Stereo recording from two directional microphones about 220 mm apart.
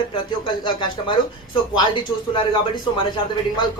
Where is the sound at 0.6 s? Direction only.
20° left (ahead or behind).